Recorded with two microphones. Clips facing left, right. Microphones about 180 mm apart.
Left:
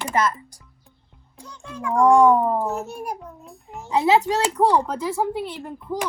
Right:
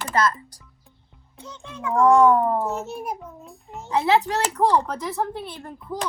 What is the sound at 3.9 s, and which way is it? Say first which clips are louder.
Speech: left 2 dB; 15° left (ahead or behind).